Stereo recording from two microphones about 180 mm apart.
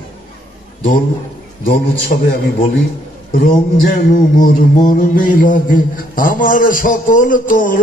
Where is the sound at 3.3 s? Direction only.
50° left (ahead or behind).